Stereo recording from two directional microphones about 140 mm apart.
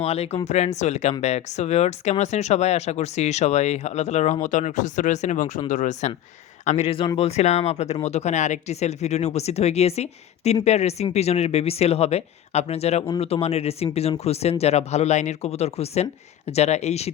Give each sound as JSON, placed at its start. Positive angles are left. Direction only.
{"t": 0.0, "sound": "speech", "side_deg": 50}